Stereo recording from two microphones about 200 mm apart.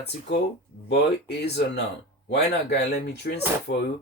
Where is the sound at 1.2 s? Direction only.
55° left (ahead or behind).